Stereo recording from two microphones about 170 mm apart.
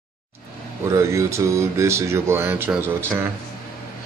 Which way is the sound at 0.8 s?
15° right (ahead or behind).